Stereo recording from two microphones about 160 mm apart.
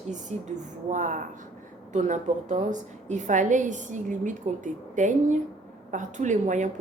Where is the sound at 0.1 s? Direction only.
50° right (ahead or behind).